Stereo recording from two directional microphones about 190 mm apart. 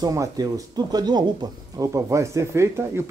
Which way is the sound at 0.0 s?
20° right (ahead or behind).